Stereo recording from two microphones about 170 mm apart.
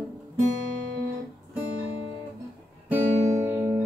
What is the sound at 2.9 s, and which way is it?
Music, 20° right (ahead or behind).